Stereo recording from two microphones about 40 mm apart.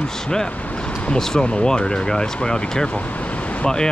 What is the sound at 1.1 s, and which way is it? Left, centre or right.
Speech, centre.